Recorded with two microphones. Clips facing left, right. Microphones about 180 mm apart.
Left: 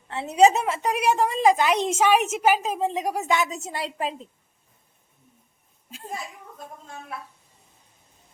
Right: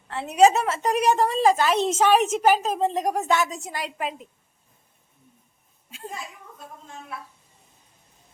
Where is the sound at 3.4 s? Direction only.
20° left (ahead or behind).